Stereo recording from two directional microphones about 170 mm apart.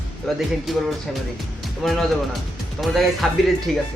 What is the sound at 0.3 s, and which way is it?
Speech, centre (ahead or behind).